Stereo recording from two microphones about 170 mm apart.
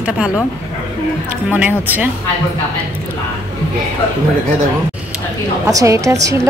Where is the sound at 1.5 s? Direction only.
10° right (ahead or behind).